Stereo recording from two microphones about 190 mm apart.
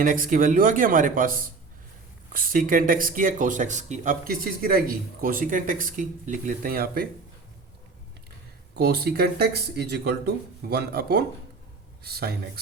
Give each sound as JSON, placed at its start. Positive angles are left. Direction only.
{"t": 0.0, "sound": "speech", "side_deg": -45}
{"t": 8.8, "sound": "speech", "side_deg": -55}